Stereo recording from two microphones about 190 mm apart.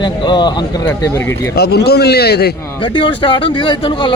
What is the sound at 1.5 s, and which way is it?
Speech, 55° left (ahead or behind).